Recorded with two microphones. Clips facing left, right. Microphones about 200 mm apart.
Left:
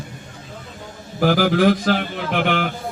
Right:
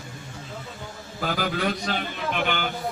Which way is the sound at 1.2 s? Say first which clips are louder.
Left 10 dB; 80° left.